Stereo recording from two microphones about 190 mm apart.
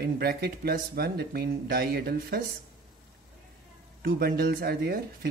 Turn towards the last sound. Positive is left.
turn(degrees=-55)  # may be behind; listen again after turning